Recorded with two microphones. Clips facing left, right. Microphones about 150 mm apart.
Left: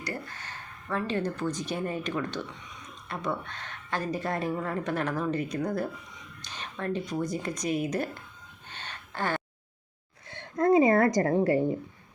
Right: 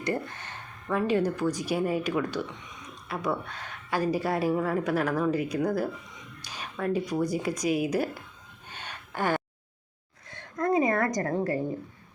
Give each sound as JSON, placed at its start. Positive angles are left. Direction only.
{"t": 0.0, "sound": "a woman's voice", "side_deg": -20}
{"t": 8.7, "sound": "gasp", "side_deg": -15}
{"t": 10.2, "sound": "a sound", "side_deg": 30}